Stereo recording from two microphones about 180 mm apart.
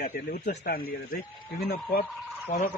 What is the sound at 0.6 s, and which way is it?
Speech, 60° left (ahead or behind).